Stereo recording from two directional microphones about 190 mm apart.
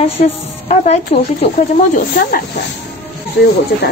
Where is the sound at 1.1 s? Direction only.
35° left (ahead or behind).